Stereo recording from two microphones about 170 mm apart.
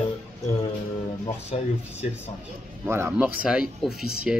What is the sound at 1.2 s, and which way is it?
Speech, 35° left (ahead or behind).